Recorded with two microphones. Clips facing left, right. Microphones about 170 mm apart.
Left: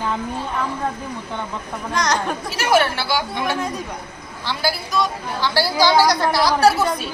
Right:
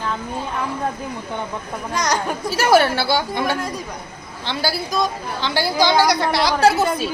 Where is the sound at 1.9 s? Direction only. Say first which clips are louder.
Left 1 dB; 10° right (ahead or behind).